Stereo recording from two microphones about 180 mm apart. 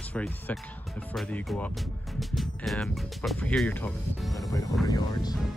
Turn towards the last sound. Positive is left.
turn(degrees=20)  # may be behind; listen again after turning